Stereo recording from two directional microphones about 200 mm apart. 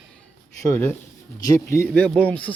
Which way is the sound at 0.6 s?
15° left (ahead or behind).